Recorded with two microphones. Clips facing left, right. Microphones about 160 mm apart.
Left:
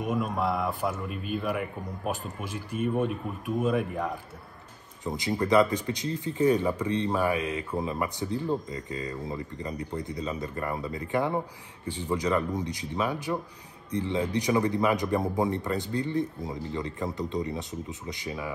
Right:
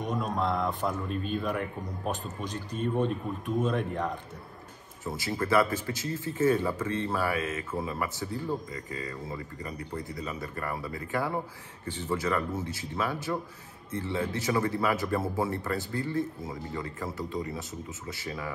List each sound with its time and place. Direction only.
0.0 s a man's voice: 5° left (ahead or behind)
5.0 s a man's voice: 20° left (ahead or behind)